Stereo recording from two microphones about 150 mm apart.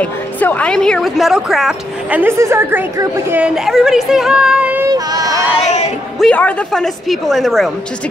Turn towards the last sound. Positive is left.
turn(degrees=0)  # may be behind; listen again after turning